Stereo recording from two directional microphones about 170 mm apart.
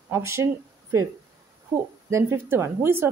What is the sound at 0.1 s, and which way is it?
Speech, 15° right (ahead or behind).